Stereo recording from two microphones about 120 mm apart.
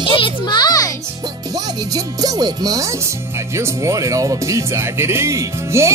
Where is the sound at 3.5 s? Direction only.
25° right (ahead or behind).